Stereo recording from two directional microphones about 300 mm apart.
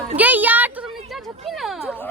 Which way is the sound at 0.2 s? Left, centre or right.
Centre.